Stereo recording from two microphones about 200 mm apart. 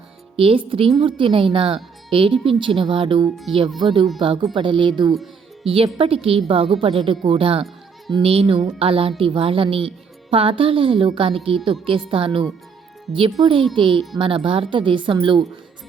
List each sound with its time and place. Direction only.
0.3 s a woman's voice: 30° right (ahead or behind)